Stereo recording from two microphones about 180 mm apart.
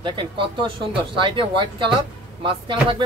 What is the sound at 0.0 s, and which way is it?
Speech, 25° right (ahead or behind).